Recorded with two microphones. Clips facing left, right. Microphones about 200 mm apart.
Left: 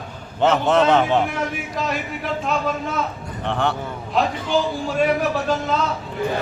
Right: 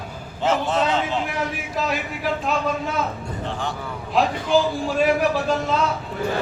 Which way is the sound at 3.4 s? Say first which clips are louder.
Left 7 dB; 65° left (ahead or behind).